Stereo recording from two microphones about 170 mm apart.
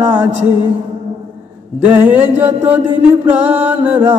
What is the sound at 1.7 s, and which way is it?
Chant, 10° right (ahead or behind).